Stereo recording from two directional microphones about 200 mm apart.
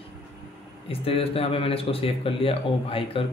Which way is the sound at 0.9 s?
30° left (ahead or behind).